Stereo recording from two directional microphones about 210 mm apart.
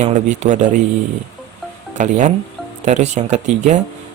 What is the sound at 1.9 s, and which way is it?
Speech, 35° right (ahead or behind).